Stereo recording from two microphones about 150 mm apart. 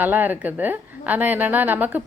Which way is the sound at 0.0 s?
10° right (ahead or behind).